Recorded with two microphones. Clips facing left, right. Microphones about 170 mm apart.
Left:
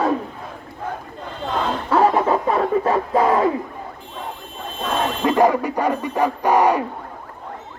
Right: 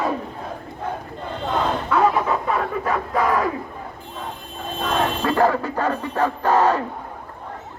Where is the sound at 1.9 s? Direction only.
30° left (ahead or behind).